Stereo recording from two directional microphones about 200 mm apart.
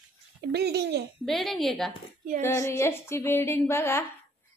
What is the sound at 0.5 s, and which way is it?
Speech, 55° right (ahead or behind).